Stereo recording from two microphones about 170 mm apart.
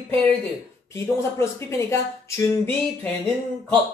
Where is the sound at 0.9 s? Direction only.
15° left (ahead or behind).